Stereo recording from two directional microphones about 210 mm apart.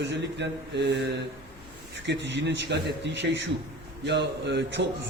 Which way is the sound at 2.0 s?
55° right (ahead or behind).